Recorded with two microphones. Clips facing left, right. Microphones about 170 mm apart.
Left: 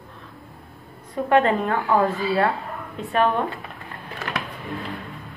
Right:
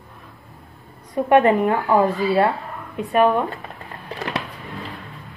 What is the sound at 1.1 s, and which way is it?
Speech, 20° right (ahead or behind).